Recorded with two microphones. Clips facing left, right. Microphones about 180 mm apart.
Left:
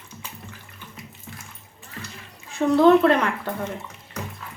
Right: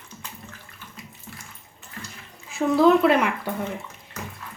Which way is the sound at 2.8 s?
5° right (ahead or behind).